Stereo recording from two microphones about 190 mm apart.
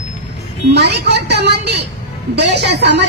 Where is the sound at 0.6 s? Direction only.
60° right (ahead or behind).